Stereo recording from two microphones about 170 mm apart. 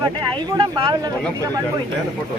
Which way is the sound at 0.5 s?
25° right (ahead or behind).